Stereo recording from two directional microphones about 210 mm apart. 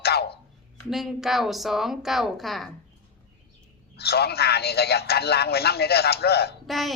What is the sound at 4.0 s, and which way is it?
A man's voice, 50° left (ahead or behind).